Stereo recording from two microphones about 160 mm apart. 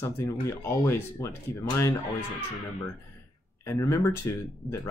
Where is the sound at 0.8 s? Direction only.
15° left (ahead or behind).